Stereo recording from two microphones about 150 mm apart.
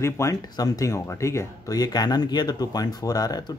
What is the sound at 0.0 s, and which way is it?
Speech, 20° left (ahead or behind).